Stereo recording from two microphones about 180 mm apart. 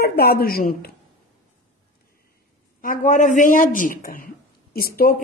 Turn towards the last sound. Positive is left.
turn(degrees=55)  # may be behind; listen again after turning